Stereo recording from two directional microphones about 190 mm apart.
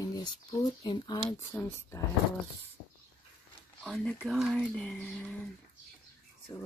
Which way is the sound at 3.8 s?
Centre (ahead or behind).